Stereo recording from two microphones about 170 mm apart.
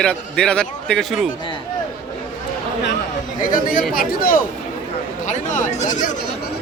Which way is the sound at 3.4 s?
55° left (ahead or behind).